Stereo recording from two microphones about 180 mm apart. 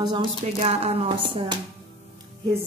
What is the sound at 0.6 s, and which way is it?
Speech, 35° right (ahead or behind).